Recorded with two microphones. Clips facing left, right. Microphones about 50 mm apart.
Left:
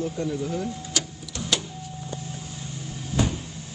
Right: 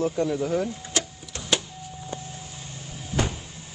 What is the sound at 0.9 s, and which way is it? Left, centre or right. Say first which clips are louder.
Vehicle: right 1 dB; right.